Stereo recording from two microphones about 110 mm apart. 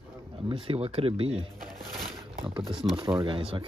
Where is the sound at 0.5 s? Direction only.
60° right (ahead or behind).